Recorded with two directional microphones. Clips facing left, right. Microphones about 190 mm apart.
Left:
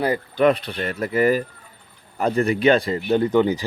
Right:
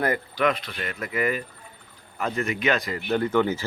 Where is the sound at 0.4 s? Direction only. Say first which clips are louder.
Left 7 dB; 35° left (ahead or behind).